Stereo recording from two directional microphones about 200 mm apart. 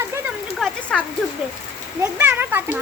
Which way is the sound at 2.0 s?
10° right (ahead or behind).